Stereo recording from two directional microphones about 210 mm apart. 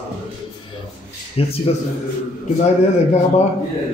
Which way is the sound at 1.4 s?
30° left (ahead or behind).